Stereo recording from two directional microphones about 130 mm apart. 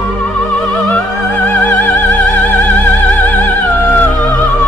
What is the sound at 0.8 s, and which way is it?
Music, 15° left (ahead or behind).